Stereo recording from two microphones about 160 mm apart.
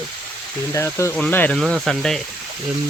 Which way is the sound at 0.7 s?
15° left (ahead or behind).